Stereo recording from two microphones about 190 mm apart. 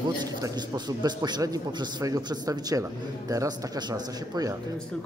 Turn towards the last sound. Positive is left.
turn(degrees=-20)  # may be behind; listen again after turning